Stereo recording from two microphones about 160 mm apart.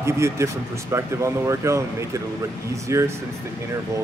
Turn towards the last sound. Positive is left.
turn(degrees=-20)  # may be behind; listen again after turning